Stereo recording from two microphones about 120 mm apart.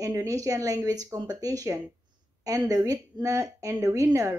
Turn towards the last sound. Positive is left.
turn(degrees=-25)  # may be behind; listen again after turning